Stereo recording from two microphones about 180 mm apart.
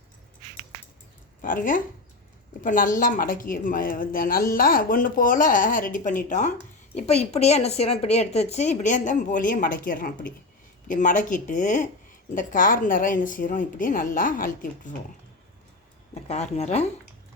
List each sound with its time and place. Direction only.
1.4 s a woman's voice: 50° left (ahead or behind)
16.3 s a woman's voice: 40° left (ahead or behind)